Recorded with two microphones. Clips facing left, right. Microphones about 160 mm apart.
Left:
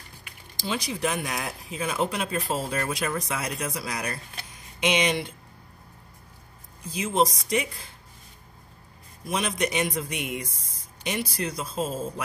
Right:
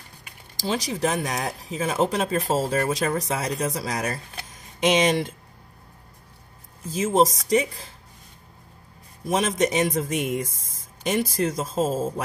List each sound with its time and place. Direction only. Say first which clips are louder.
0.6 s speech: right 4 dB; 40° right (ahead or behind)
6.9 s speech: right 4 dB; 40° right (ahead or behind)
9.3 s speech: right 5 dB; 40° right (ahead or behind)